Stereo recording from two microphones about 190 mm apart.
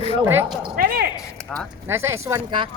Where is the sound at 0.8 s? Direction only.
55° right (ahead or behind).